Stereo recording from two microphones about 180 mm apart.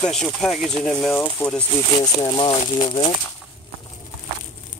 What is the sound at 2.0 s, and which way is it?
Speech, 20° left (ahead or behind).